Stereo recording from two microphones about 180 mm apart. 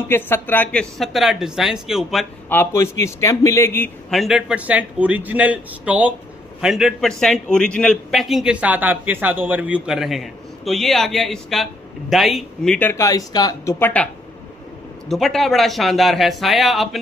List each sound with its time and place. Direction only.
0.1 s a man's voice: 10° left (ahead or behind)
2.5 s a man's voice: 15° left (ahead or behind)
4.1 s a man's voice: centre (ahead or behind)
15.0 s a man's voice: centre (ahead or behind)